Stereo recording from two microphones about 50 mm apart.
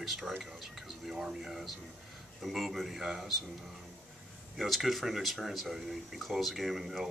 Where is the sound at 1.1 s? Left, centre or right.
Centre.